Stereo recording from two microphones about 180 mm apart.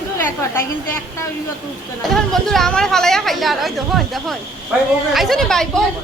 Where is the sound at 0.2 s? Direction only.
10° left (ahead or behind).